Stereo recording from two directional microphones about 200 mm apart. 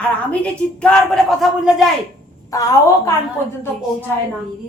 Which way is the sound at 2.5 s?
15° left (ahead or behind).